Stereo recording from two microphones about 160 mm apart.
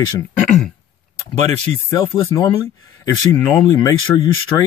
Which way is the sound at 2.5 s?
35° left (ahead or behind).